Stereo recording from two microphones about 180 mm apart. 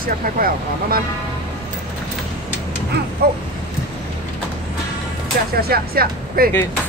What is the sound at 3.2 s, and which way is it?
Speech, 60° right (ahead or behind).